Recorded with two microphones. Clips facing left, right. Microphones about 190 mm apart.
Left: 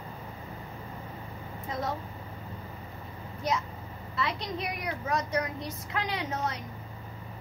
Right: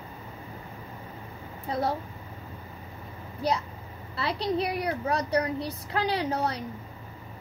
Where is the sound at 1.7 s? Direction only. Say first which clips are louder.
Right 5 dB; 35° right (ahead or behind).